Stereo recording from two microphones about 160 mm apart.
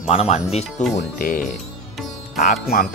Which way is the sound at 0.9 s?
60° left (ahead or behind).